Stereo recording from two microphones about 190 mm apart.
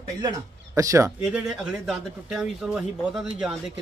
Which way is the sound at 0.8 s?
15° right (ahead or behind).